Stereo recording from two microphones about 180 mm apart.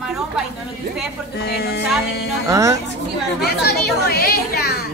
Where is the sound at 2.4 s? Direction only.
15° right (ahead or behind).